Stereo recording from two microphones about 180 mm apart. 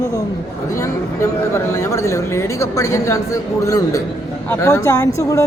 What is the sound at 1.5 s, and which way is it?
Speech, 15° left (ahead or behind).